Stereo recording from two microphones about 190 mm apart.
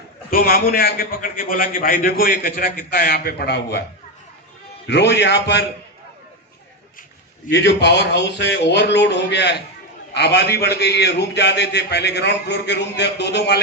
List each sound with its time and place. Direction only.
0.3 s a man's voice: 50° left (ahead or behind)
4.9 s a man's voice: 65° left (ahead or behind)
7.5 s a man's voice: 65° left (ahead or behind)